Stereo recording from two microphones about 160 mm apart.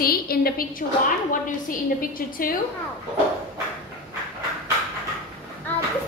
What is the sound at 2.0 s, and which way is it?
Speech, 65° left (ahead or behind).